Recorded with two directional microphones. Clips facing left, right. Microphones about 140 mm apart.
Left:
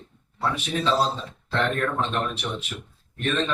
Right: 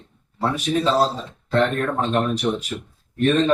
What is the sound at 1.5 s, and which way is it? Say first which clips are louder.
Speech: right 5 dB; 40° right (ahead or behind).